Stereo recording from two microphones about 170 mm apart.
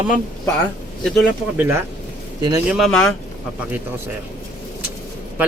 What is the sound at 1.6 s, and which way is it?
Speech, 15° right (ahead or behind).